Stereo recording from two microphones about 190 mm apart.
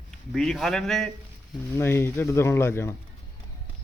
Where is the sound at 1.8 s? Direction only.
15° left (ahead or behind).